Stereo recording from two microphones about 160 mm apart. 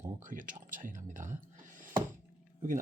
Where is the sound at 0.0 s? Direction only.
55° right (ahead or behind).